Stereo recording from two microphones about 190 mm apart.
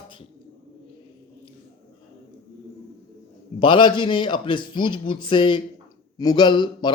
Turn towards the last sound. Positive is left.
turn(degrees=25)  # may be behind; listen again after turning